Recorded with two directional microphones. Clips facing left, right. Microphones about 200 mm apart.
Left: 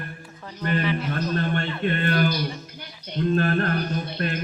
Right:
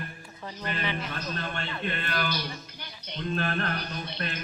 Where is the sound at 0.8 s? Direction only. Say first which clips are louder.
Left 7 dB; 5° left (ahead or behind).